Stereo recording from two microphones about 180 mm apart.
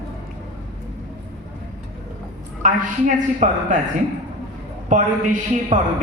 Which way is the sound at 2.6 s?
45° right (ahead or behind).